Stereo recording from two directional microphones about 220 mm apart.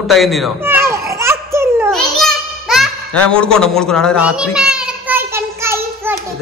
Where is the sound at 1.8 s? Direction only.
Centre (ahead or behind).